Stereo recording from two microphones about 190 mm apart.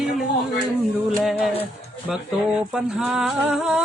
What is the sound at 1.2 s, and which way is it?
Speech, centre (ahead or behind).